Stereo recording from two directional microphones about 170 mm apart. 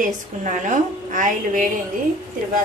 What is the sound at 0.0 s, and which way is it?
A woman's voice, 50° right (ahead or behind).